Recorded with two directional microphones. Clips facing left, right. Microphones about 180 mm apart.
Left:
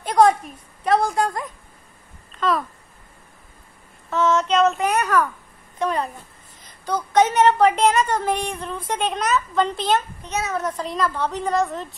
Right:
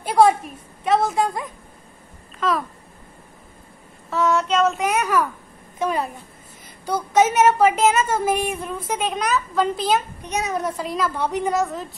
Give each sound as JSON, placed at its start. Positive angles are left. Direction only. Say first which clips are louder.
{"t": 0.0, "sound": "a sound", "louder": "even", "side_deg": -10}
{"t": 0.8, "sound": "speech", "louder": "even", "side_deg": 0}
{"t": 4.3, "sound": "a child's voice", "louder": "left 1 dB", "side_deg": -5}
{"t": 9.9, "sound": "a child's voice", "louder": "even", "side_deg": -15}